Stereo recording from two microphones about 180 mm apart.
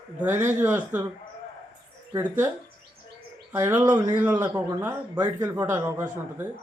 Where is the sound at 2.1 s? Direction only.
10° right (ahead or behind).